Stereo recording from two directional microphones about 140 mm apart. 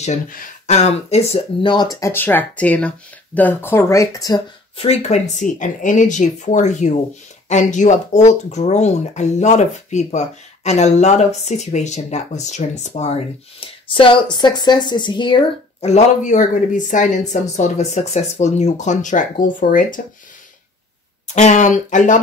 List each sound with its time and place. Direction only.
0.7 s speech: 50° left (ahead or behind); by 4.4 s 25° left (ahead or behind)
4.7 s speech: 50° left (ahead or behind)
15.8 s speech: 55° left (ahead or behind)
21.4 s speech: 60° left (ahead or behind)